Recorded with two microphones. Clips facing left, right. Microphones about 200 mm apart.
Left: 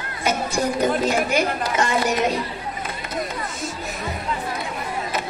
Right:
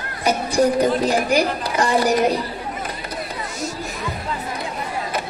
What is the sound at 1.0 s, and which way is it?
A woman's voice, 35° right (ahead or behind).